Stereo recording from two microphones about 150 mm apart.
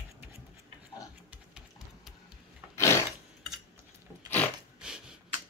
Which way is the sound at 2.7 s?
20° left (ahead or behind).